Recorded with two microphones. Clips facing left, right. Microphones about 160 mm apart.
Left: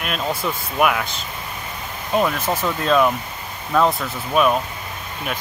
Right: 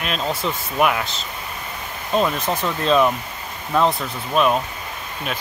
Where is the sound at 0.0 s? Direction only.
5° left (ahead or behind).